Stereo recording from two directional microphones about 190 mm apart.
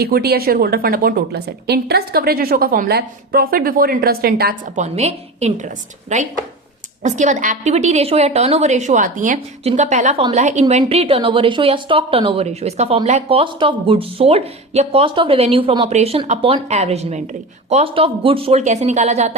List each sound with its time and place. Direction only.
0.0 s a woman's voice: 55° right (ahead or behind); by 19.4 s 35° right (ahead or behind)